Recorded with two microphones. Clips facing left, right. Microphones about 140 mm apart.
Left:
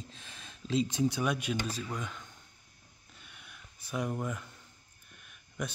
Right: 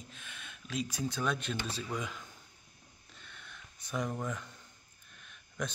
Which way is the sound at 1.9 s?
Centre (ahead or behind).